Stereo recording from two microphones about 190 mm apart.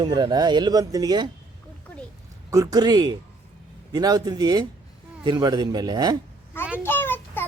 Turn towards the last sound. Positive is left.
turn(degrees=10)  # may be behind; listen again after turning